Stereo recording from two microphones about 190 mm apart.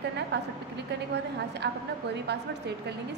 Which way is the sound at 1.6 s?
60° right (ahead or behind).